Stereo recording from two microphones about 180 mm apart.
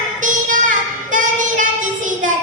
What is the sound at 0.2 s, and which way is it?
Child singing, 45° right (ahead or behind).